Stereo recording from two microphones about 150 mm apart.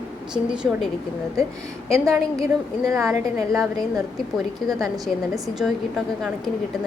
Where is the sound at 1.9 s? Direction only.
20° right (ahead or behind).